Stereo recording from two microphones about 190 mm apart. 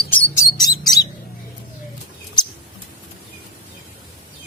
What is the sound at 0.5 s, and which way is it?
Bird, 20° left (ahead or behind).